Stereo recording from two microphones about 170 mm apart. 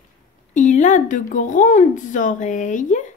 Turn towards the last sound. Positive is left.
turn(degrees=45)  # may be behind; listen again after turning